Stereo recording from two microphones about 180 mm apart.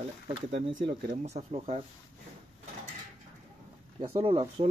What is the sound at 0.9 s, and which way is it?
Speech, 35° right (ahead or behind).